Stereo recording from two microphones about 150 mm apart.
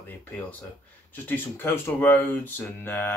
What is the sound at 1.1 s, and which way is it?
Speech, 15° left (ahead or behind).